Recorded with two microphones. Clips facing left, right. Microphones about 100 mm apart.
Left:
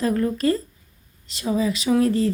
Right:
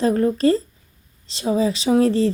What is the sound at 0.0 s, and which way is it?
Speech, 30° right (ahead or behind).